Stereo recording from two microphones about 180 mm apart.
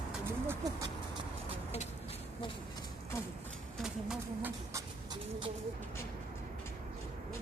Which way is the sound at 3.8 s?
5° right (ahead or behind).